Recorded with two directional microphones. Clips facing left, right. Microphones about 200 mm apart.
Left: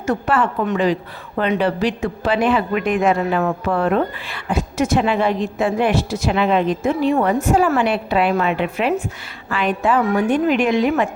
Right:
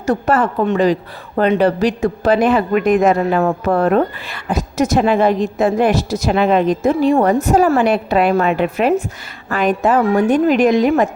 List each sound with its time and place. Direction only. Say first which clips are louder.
0.0 s a woman's voice: right 3 dB; 40° right (ahead or behind)